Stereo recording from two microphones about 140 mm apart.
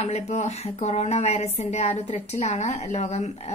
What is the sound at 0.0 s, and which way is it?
A woman's voice, 50° left (ahead or behind).